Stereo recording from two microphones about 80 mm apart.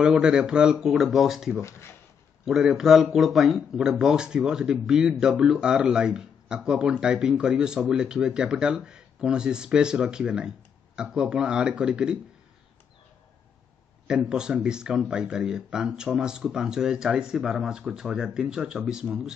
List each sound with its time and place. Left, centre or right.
0.0 s speech: centre
1.6 s speech: left
2.4 s speech: centre
14.0 s speech: centre